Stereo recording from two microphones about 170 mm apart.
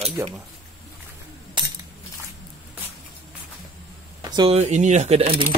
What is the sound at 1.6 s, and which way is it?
Coin, 30° right (ahead or behind).